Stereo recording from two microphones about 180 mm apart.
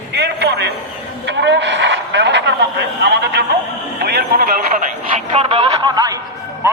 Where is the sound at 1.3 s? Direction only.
75° right (ahead or behind).